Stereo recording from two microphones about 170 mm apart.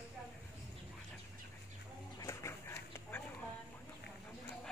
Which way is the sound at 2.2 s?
15° left (ahead or behind).